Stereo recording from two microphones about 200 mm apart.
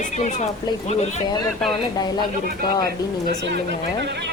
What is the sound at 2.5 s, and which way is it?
Speech, 50° right (ahead or behind).